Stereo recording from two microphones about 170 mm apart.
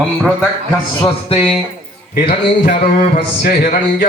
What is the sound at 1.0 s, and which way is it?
Music, 35° left (ahead or behind).